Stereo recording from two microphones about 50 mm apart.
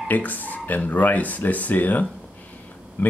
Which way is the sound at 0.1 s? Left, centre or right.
Left.